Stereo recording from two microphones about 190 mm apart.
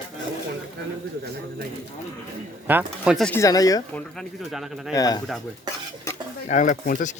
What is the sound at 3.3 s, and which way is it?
Speech, 15° left (ahead or behind).